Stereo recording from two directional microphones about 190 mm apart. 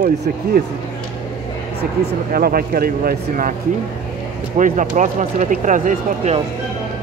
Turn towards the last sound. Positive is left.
turn(degrees=-40)  # may be behind; listen again after turning